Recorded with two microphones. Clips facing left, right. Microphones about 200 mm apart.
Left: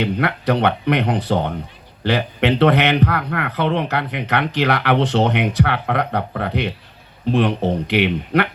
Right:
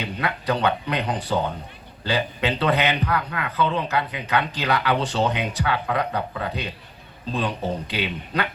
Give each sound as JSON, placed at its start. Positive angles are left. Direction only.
{"t": 0.0, "sound": "speech", "side_deg": 70}